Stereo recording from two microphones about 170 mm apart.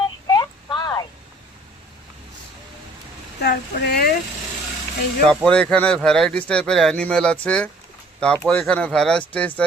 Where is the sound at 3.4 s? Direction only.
70° left (ahead or behind).